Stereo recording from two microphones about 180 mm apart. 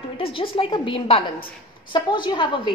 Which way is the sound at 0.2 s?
30° left (ahead or behind).